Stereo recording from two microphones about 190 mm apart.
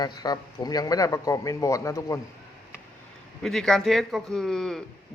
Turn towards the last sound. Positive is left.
turn(degrees=0)  # may be behind; listen again after turning